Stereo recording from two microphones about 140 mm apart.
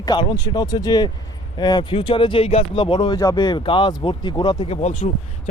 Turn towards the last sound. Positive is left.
turn(degrees=50)  # may be behind; listen again after turning